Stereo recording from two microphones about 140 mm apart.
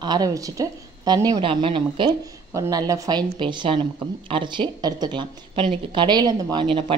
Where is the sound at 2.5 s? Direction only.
25° right (ahead or behind).